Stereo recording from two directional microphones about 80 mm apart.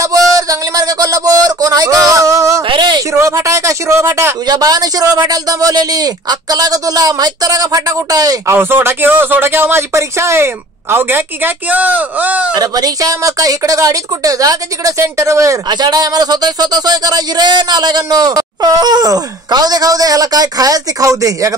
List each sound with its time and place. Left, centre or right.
0.0 s a sound: right
2.7 s a sound: right
3.1 s a man's voice: right
4.5 s a man's voice: right
8.5 s speech: right
12.5 s a man's voice: right
15.7 s speech: right